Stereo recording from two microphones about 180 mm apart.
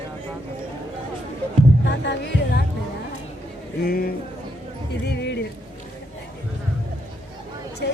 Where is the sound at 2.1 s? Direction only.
70° left (ahead or behind).